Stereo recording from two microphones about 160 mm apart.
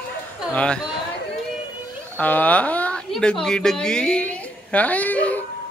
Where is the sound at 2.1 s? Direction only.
10° left (ahead or behind).